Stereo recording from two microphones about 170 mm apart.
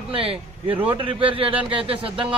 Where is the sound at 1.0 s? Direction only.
30° right (ahead or behind).